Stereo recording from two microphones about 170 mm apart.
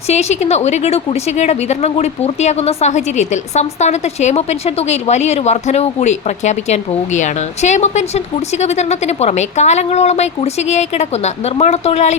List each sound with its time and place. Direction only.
0.1 s a woman's voice: 40° left (ahead or behind)